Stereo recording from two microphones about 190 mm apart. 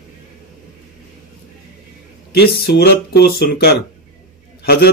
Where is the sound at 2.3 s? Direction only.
55° left (ahead or behind).